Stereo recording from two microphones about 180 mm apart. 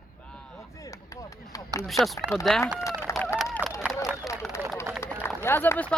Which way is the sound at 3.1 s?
15° left (ahead or behind).